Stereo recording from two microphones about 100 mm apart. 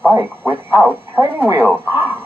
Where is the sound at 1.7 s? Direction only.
20° right (ahead or behind).